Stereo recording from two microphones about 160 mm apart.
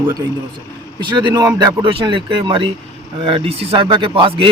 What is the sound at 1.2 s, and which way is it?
Speech, 25° right (ahead or behind).